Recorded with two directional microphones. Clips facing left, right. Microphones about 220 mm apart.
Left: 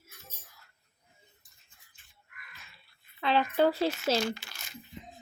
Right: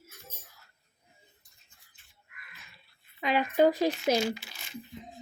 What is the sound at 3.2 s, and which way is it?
Speech, 15° right (ahead or behind).